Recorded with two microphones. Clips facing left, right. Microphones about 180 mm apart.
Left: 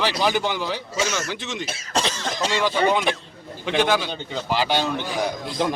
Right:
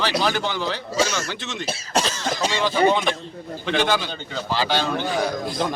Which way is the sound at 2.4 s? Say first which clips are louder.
Left 2 dB; 10° right (ahead or behind).